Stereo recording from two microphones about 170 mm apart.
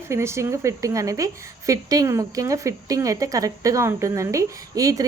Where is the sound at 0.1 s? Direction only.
15° right (ahead or behind).